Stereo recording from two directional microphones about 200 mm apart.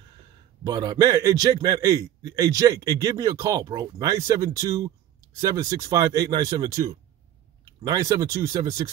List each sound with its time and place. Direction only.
0.7 s a man's voice: 20° right (ahead or behind)